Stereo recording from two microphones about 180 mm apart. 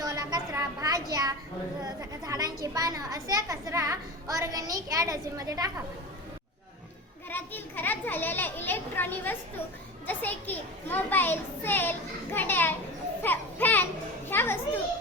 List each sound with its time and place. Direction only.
0.0 s a sound: 20° right (ahead or behind)
1.8 s speech: 20° right (ahead or behind)
7.3 s a child's voice: 10° left (ahead or behind)